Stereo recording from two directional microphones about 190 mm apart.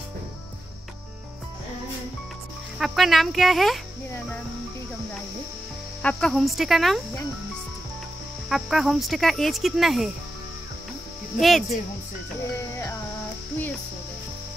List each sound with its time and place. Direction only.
2.8 s speech: centre (ahead or behind)
6.0 s speech: centre (ahead or behind)
8.5 s speech: centre (ahead or behind)
11.3 s speech: centre (ahead or behind)